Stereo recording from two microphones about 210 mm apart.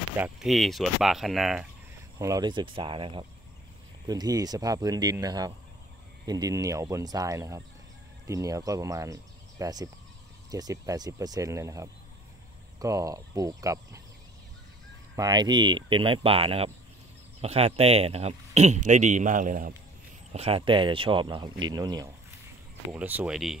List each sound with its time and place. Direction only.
0.2 s speech: centre (ahead or behind)
2.1 s speech: 15° right (ahead or behind)
15.1 s speech: 20° right (ahead or behind); by 19.7 s 40° right (ahead or behind)
20.3 s speech: 25° right (ahead or behind); by 23.6 s centre (ahead or behind)